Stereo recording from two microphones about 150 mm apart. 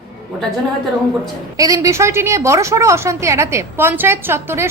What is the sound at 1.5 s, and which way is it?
A woman's voice, 20° right (ahead or behind).